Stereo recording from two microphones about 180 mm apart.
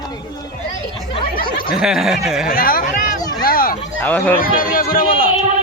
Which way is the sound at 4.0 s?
10° left (ahead or behind).